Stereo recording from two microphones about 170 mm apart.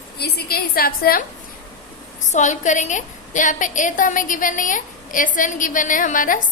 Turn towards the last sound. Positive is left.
turn(degrees=50)  # may be behind; listen again after turning